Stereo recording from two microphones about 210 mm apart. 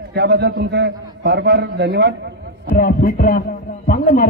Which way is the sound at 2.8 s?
45° left (ahead or behind).